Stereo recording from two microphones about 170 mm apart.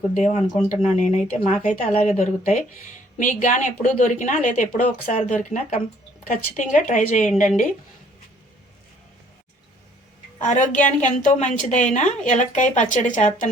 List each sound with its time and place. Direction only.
0.3 s a woman's voice: 40° left (ahead or behind)
10.4 s a woman's voice: 45° left (ahead or behind)